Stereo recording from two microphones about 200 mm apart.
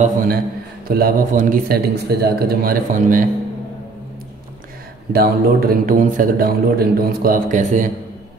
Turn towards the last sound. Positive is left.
turn(degrees=-40)  # may be behind; listen again after turning